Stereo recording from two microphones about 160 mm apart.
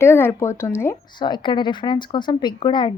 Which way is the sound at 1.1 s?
30° left (ahead or behind).